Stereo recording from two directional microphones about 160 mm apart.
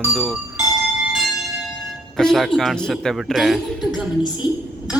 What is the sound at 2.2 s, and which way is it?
Speech, centre (ahead or behind).